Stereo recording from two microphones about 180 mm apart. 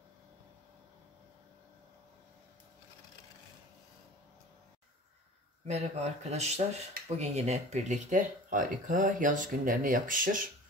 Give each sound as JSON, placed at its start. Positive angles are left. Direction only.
{"t": 5.7, "sound": "speech", "side_deg": -35}